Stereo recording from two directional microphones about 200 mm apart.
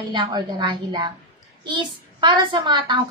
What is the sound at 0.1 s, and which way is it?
Speech, 20° right (ahead or behind).